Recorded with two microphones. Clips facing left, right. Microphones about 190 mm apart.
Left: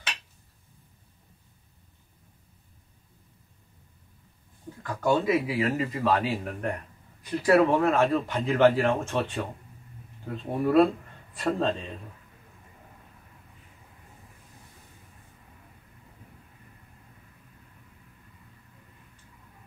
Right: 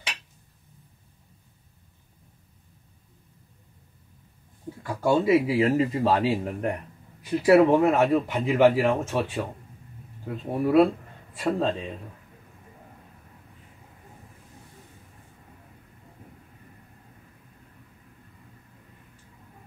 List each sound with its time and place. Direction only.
4.8 s speech: 10° right (ahead or behind)
5.2 s speech: 30° right (ahead or behind)
7.2 s speech: 15° right (ahead or behind)